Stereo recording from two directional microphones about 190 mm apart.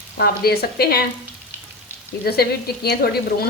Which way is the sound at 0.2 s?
55° left (ahead or behind).